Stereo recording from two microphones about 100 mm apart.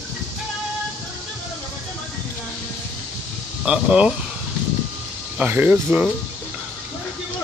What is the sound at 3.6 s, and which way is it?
Speech, 10° right (ahead or behind).